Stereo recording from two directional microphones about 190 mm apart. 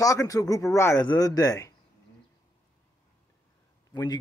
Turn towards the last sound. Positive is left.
turn(degrees=20)  # may be behind; listen again after turning